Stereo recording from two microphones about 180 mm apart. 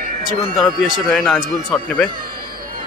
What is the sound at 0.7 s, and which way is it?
Speech, centre (ahead or behind).